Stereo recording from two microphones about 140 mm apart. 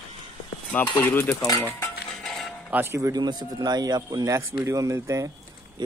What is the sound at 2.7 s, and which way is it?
Speech, 15° right (ahead or behind).